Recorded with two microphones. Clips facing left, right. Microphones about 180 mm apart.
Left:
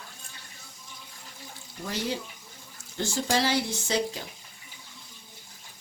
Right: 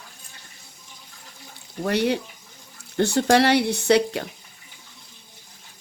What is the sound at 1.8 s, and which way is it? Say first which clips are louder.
Speech: right 9 dB; 65° right (ahead or behind).